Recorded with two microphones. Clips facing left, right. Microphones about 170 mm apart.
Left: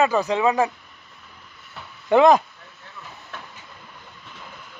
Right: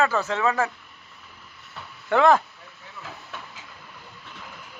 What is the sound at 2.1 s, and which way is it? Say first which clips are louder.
Speech: left 4 dB; 15° left (ahead or behind).